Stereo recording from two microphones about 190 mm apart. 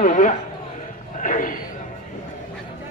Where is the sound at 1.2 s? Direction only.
45° left (ahead or behind).